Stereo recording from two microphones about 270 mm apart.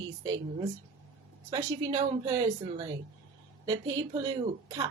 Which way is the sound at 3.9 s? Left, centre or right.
Centre.